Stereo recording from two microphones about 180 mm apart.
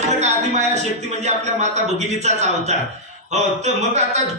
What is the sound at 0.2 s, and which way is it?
A man's voice, 40° right (ahead or behind).